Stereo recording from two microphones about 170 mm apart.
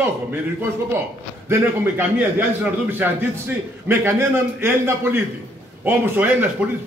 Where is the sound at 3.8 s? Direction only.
15° right (ahead or behind).